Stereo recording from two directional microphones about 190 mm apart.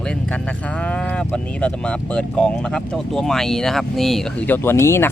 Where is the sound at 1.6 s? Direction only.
5° left (ahead or behind).